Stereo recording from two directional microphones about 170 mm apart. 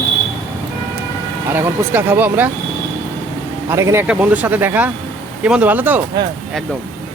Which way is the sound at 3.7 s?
15° right (ahead or behind).